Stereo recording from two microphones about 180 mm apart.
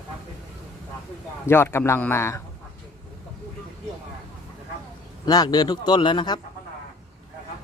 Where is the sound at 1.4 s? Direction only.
15° left (ahead or behind).